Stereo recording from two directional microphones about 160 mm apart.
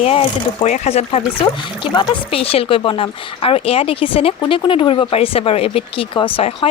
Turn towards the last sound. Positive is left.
turn(degrees=35)  # may be behind; listen again after turning